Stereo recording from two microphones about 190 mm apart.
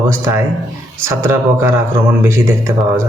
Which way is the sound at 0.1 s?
15° right (ahead or behind).